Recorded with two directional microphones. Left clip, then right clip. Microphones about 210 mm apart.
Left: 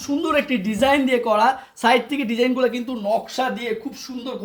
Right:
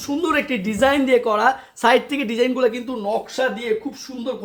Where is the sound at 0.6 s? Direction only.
15° right (ahead or behind); by 3.2 s centre (ahead or behind).